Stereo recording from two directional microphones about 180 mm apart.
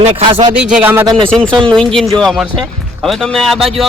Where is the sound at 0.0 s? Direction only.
30° right (ahead or behind).